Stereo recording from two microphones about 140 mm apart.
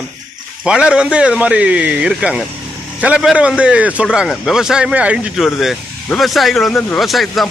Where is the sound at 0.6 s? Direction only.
5° right (ahead or behind).